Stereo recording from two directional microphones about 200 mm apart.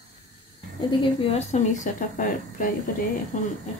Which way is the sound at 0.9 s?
30° left (ahead or behind).